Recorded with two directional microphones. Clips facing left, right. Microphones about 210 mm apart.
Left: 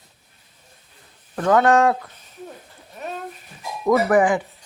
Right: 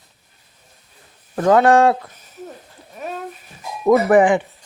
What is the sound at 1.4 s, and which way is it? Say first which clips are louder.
Speech: right 3 dB; 30° right (ahead or behind).